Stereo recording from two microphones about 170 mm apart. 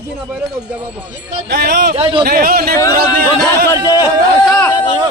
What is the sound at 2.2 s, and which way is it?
Speech, 65° right (ahead or behind).